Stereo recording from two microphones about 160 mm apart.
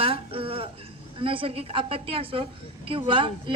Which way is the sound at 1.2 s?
35° right (ahead or behind).